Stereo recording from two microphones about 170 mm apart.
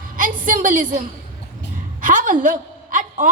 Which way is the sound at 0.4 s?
50° right (ahead or behind).